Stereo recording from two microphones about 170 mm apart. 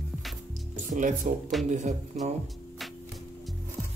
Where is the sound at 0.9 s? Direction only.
50° right (ahead or behind).